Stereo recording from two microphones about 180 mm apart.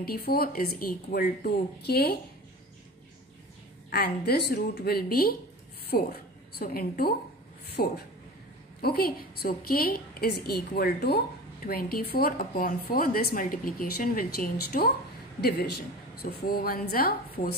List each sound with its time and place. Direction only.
0.0 s a woman's voice: 60° left (ahead or behind)
3.9 s a woman's voice: 60° left (ahead or behind)